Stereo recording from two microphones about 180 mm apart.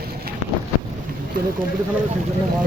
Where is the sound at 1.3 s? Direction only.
50° right (ahead or behind).